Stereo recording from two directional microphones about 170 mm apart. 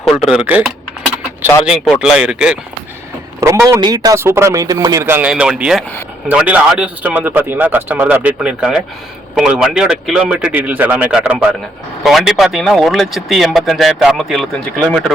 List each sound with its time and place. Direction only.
0.0 s speech: 5° right (ahead or behind)
2.0 s speech: 5° right (ahead or behind)
3.4 s a man's voice: 15° right (ahead or behind); by 15.1 s centre (ahead or behind)